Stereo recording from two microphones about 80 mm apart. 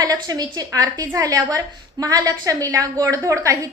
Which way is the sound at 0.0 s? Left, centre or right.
Right.